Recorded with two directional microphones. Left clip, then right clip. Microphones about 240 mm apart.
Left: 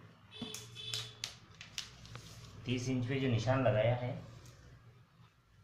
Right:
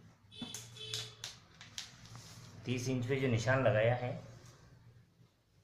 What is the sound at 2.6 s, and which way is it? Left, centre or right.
A man's voice, right.